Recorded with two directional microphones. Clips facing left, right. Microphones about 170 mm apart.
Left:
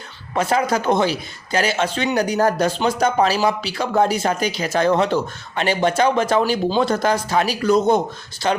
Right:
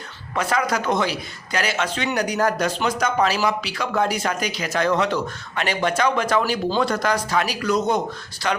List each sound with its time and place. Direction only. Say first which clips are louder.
0.3 s speech: left 3 dB; 25° left (ahead or behind)